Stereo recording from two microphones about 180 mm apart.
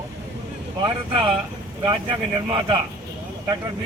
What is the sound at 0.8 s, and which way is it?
A man's voice, 30° right (ahead or behind).